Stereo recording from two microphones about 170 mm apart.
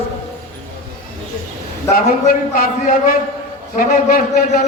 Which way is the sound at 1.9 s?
60° left (ahead or behind).